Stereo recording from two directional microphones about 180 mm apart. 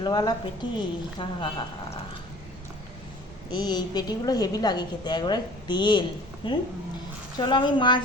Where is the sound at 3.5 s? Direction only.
25° left (ahead or behind).